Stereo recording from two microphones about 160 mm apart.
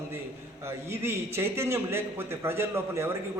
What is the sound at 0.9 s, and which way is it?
A man's voice, 15° right (ahead or behind).